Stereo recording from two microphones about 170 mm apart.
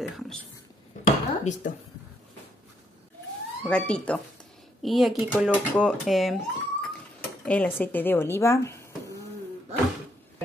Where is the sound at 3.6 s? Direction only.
5° left (ahead or behind).